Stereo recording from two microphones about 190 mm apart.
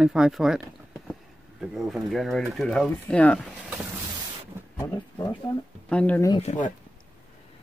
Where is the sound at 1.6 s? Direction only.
Centre (ahead or behind).